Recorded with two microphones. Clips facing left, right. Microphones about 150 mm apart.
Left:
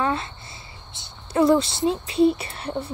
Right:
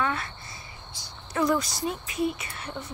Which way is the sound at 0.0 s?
30° left (ahead or behind).